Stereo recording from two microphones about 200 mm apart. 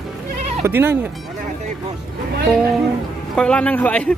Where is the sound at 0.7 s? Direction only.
10° right (ahead or behind).